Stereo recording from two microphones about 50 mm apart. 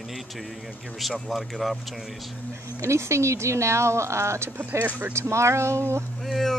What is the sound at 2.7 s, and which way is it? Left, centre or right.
Speech, right.